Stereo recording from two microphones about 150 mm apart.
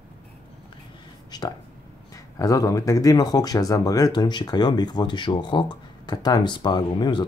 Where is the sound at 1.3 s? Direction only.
30° left (ahead or behind).